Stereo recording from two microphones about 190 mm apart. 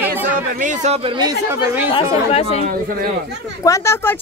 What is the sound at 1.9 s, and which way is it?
Speech, 30° left (ahead or behind).